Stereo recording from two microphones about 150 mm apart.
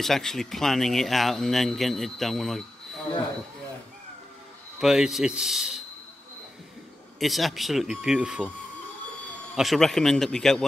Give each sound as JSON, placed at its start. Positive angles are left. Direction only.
{"t": 0.0, "sound": "speech", "side_deg": 0}
{"t": 4.7, "sound": "speech", "side_deg": -5}
{"t": 7.2, "sound": "speech", "side_deg": 0}
{"t": 9.6, "sound": "speech", "side_deg": 0}